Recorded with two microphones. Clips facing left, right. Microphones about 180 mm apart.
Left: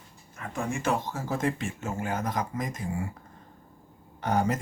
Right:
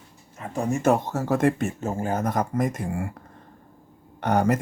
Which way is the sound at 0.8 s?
60° right (ahead or behind).